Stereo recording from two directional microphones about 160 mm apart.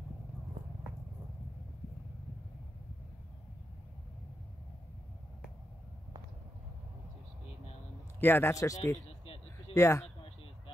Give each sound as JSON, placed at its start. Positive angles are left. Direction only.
{"t": 8.2, "sound": "speech", "side_deg": 15}
{"t": 9.2, "sound": "a sound", "side_deg": 35}
{"t": 9.8, "sound": "speech", "side_deg": 20}